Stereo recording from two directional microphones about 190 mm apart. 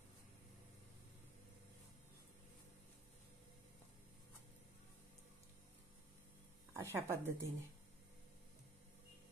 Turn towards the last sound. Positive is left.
turn(degrees=-15)  # may be behind; listen again after turning